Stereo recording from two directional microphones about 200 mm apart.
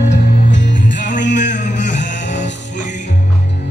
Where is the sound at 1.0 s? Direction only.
40° left (ahead or behind).